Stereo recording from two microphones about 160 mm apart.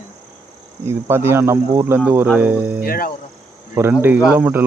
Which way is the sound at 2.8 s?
65° left (ahead or behind).